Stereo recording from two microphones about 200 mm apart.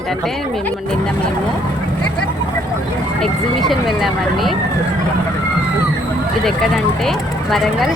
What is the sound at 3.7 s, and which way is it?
Speech, centre (ahead or behind).